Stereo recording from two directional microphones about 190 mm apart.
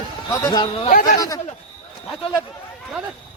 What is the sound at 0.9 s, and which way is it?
Speech, 45° left (ahead or behind).